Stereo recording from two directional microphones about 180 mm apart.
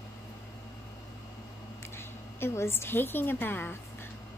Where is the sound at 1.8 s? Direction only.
15° left (ahead or behind).